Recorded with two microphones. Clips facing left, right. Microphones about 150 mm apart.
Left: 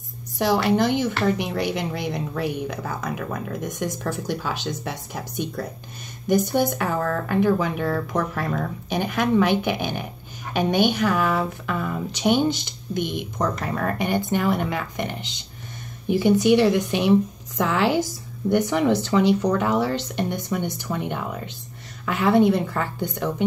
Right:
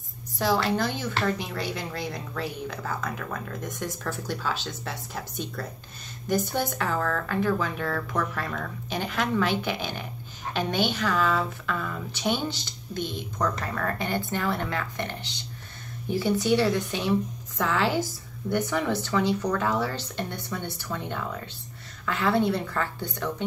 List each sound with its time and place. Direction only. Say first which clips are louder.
0.4 s speech: left 5 dB; 15° left (ahead or behind)
6.2 s a woman's voice: left 6 dB; 15° left (ahead or behind)